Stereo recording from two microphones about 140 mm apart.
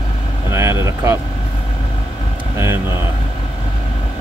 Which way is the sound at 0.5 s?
20° right (ahead or behind).